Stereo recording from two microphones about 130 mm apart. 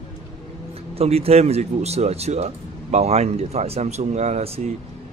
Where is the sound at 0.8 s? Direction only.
50° right (ahead or behind).